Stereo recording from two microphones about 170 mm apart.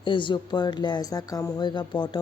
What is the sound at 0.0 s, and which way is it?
Speech, 30° left (ahead or behind).